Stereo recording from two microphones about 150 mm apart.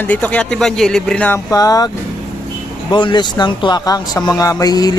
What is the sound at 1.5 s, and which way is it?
Speech, 25° left (ahead or behind).